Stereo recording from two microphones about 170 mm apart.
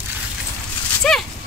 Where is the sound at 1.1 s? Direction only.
5° left (ahead or behind).